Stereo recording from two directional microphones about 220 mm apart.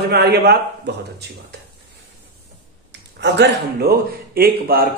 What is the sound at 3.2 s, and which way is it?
Speech, 50° right (ahead or behind).